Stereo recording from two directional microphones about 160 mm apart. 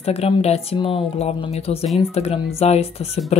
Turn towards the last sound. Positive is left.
turn(degrees=40)  # may be behind; listen again after turning